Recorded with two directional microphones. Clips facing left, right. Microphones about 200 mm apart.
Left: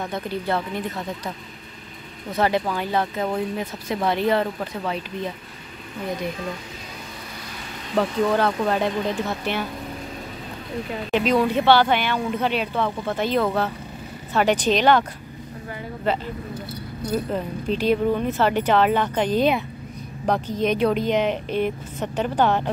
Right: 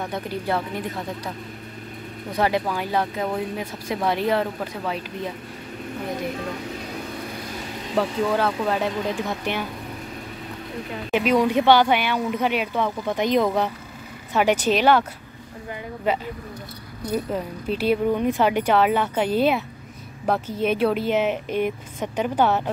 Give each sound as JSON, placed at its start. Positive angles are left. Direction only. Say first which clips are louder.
{"t": 0.1, "sound": "speech", "louder": "left 1 dB", "side_deg": -10}
{"t": 2.3, "sound": "speech", "louder": "left 1 dB", "side_deg": -10}
{"t": 7.9, "sound": "speech", "louder": "left 2 dB", "side_deg": -5}
{"t": 11.1, "sound": "speech", "louder": "right 1 dB", "side_deg": -10}
{"t": 16.1, "sound": "speech", "louder": "even", "side_deg": -10}